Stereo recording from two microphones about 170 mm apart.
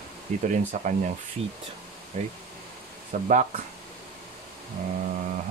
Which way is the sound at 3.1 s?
45° right (ahead or behind).